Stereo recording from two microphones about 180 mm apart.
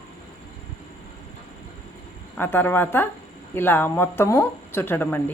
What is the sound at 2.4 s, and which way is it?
A woman's voice, 10° left (ahead or behind).